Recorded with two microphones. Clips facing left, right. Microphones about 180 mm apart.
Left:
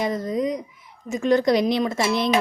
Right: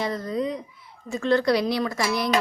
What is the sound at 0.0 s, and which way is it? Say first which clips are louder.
Speech: left 3 dB; 20° left (ahead or behind).